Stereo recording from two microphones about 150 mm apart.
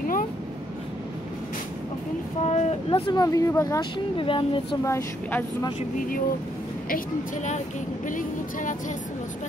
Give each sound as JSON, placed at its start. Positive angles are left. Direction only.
{"t": 2.4, "sound": "a sound", "side_deg": 45}
{"t": 3.1, "sound": "speech", "side_deg": 25}
{"t": 4.2, "sound": "speech", "side_deg": 35}
{"t": 4.8, "sound": "speech", "side_deg": 20}
{"t": 5.9, "sound": "speech", "side_deg": 70}
{"t": 8.1, "sound": "speech", "side_deg": 60}